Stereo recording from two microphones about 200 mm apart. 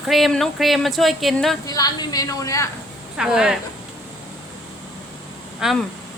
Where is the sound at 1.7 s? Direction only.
20° left (ahead or behind).